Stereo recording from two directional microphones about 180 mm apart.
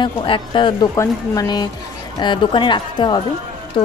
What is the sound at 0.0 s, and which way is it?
Speech, 25° left (ahead or behind).